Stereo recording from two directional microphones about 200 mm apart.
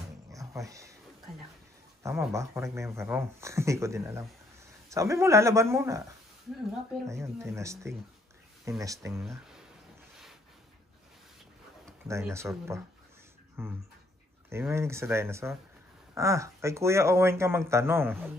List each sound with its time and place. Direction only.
0.3 s music: 15° right (ahead or behind)
2.0 s speech: 15° right (ahead or behind)
7.1 s speech: 15° right (ahead or behind)
12.1 s speech: 15° right (ahead or behind)